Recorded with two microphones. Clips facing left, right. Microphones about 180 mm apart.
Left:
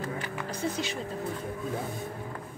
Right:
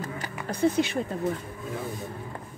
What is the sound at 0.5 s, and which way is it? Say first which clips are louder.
Speech: right 10 dB; 60° right (ahead or behind).